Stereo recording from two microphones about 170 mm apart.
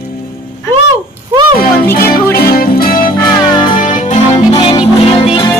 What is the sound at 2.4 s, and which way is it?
Music, 60° left (ahead or behind).